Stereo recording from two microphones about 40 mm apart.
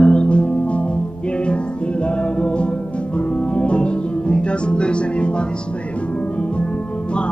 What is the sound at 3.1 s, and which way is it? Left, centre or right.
Music, left.